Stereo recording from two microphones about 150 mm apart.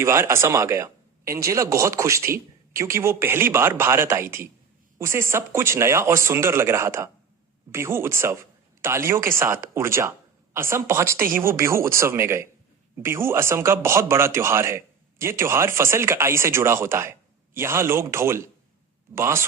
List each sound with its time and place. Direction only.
0.0 s speech: 20° right (ahead or behind)